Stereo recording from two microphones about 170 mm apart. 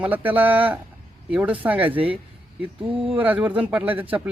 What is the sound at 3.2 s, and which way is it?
Speech, 10° right (ahead or behind).